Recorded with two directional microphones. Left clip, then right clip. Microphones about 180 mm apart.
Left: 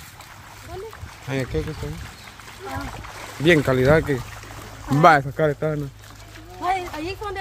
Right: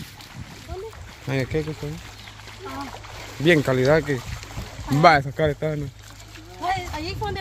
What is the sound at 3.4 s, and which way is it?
Speech, 5° left (ahead or behind).